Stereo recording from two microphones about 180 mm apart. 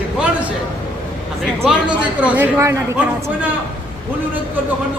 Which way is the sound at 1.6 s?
5° right (ahead or behind).